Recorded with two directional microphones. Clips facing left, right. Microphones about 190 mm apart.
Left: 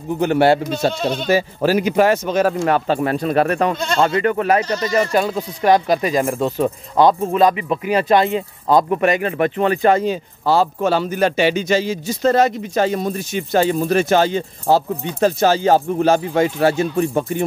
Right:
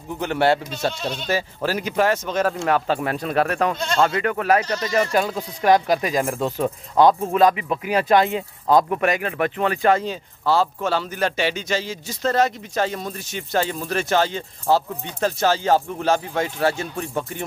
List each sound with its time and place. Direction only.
0.2 s a man's voice: 10° left (ahead or behind)
0.9 s speech: 60° left (ahead or behind)
1.3 s speech: 10° left (ahead or behind)
6.3 s a man's voice: 15° left (ahead or behind)
7.8 s speech: 5° right (ahead or behind)
9.9 s a man's voice: 15° left (ahead or behind)